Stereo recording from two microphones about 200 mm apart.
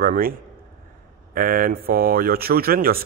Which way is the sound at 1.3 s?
45° right (ahead or behind).